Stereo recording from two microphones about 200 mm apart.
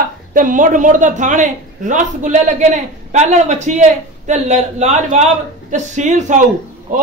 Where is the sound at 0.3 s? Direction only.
40° right (ahead or behind).